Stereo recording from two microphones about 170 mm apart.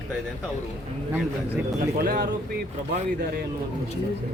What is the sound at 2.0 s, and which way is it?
Speech, 60° right (ahead or behind).